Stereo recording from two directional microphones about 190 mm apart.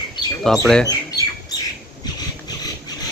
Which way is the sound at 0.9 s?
20° left (ahead or behind).